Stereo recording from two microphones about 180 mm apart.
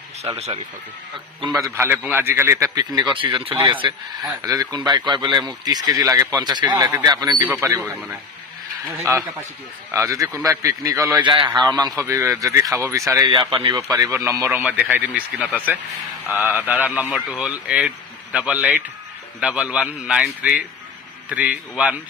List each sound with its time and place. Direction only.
0.4 s speech: 35° right (ahead or behind)
1.8 s a man's voice: 10° right (ahead or behind); by 13.7 s 30° right (ahead or behind)
13.9 s a man's voice: 15° right (ahead or behind)